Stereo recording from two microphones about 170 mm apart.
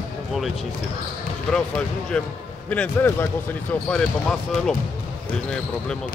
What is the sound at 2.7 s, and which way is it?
Speech, 10° left (ahead or behind).